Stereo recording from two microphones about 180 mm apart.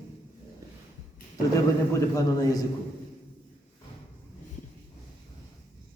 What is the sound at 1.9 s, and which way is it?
Speech, 20° left (ahead or behind).